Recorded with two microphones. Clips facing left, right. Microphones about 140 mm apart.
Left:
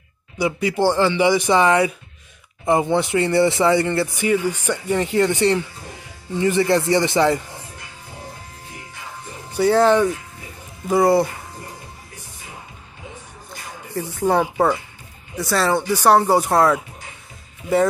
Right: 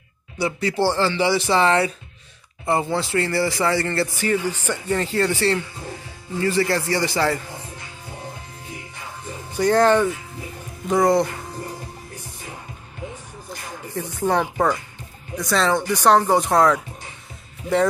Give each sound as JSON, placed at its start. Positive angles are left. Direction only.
{"t": 0.4, "sound": "a man's voice", "side_deg": 15}
{"t": 9.5, "sound": "speech", "side_deg": 10}
{"t": 13.9, "sound": "speech", "side_deg": 10}